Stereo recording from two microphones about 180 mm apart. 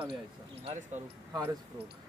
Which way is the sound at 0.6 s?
40° right (ahead or behind).